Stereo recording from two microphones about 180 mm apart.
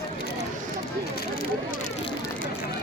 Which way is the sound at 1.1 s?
50° left (ahead or behind).